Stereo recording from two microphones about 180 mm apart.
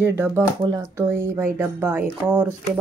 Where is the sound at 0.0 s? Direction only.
15° right (ahead or behind).